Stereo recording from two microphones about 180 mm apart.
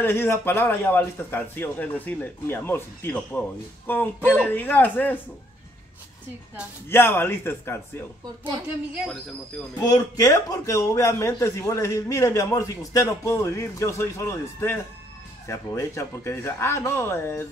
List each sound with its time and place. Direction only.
0.0 s speech: 10° left (ahead or behind)
6.9 s speech: 15° left (ahead or behind)
8.9 s speech: centre (ahead or behind)
9.8 s speech: 20° left (ahead or behind)